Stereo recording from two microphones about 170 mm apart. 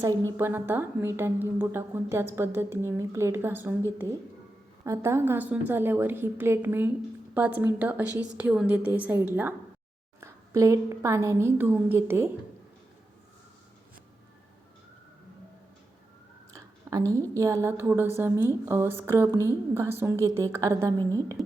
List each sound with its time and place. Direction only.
0.0 s a woman's voice: 20° right (ahead or behind)
16.5 s a woman's voice: 20° right (ahead or behind)